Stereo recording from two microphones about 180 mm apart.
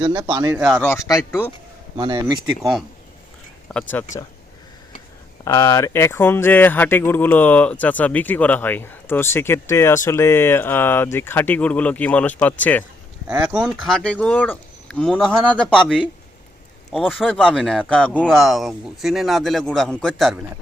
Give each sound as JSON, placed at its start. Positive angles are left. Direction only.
{"t": 0.0, "sound": "speech", "side_deg": -25}
{"t": 0.5, "sound": "speech", "side_deg": 0}
{"t": 0.8, "sound": "speech", "side_deg": 10}
{"t": 2.0, "sound": "speech", "side_deg": -25}
{"t": 3.7, "sound": "speech", "side_deg": 5}
{"t": 5.5, "sound": "speech", "side_deg": 20}
{"t": 13.2, "sound": "speech", "side_deg": -5}